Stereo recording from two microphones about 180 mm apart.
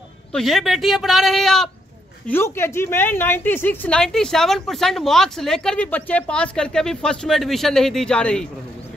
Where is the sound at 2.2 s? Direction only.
10° left (ahead or behind).